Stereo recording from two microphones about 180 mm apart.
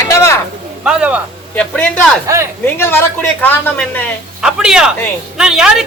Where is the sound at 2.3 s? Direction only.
15° right (ahead or behind).